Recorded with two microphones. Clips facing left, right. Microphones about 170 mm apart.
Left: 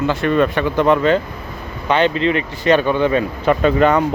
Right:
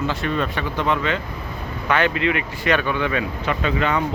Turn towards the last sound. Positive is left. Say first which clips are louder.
# left 8 dB
turn(degrees=40)  # may be behind; listen again after turning